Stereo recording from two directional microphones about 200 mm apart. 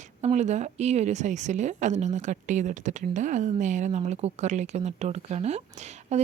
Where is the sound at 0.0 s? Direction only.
35° right (ahead or behind).